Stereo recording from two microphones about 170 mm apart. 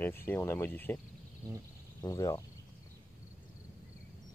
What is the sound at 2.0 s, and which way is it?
Speech, 20° left (ahead or behind).